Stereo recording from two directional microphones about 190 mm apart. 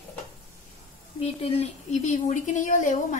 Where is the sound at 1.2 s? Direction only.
30° left (ahead or behind).